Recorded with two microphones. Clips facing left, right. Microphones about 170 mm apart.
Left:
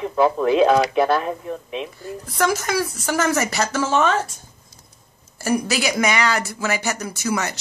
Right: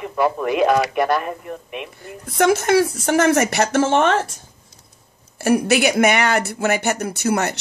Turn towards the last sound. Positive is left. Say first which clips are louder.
# right 4 dB
turn(degrees=-60)  # may be behind; listen again after turning